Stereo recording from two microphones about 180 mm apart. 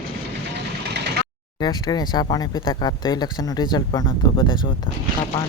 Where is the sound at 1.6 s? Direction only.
20° left (ahead or behind).